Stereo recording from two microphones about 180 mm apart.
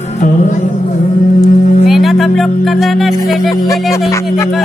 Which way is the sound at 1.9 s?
Centre (ahead or behind).